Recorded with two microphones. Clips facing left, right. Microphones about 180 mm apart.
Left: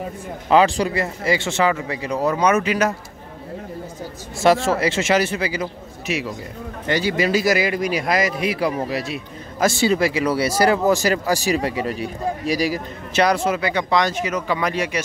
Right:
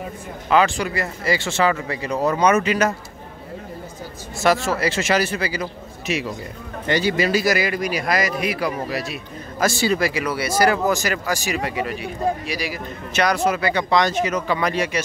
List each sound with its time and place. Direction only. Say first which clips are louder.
0.5 s speech: left 2 dB; 30° left (ahead or behind); by 2.9 s 10° left (ahead or behind)
4.4 s speech: left 3 dB; 30° left (ahead or behind)
6.0 s a man's voice: even; 10° left (ahead or behind)
7.2 s speech: left 1 dB; 20° left (ahead or behind)